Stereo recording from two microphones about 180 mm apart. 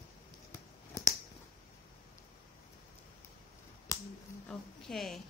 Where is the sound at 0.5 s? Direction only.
20° left (ahead or behind).